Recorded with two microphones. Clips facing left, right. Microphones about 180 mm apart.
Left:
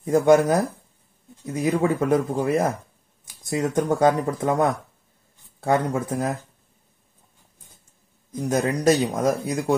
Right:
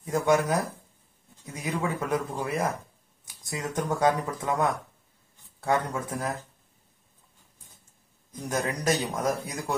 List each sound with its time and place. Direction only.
0.0 s speech: 50° left (ahead or behind)
5.6 s speech: 35° left (ahead or behind)
8.5 s speech: 35° left (ahead or behind)